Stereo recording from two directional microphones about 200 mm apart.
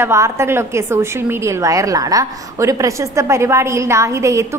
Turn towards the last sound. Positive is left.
turn(degrees=-15)  # may be behind; listen again after turning